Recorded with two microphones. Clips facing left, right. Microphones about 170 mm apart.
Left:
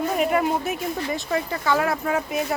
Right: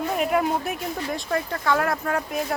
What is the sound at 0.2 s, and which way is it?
A woman's voice, centre (ahead or behind).